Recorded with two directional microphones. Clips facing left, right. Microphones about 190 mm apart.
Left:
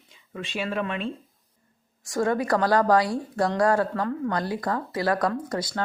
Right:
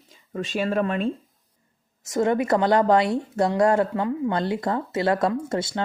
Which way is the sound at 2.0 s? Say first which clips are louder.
Right 3 dB; 20° right (ahead or behind).